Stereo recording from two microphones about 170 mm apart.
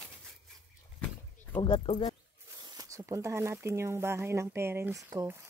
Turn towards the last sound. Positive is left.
turn(degrees=-20)  # may be behind; listen again after turning